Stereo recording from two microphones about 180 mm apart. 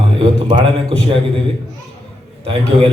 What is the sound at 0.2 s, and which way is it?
A man's voice, 25° right (ahead or behind).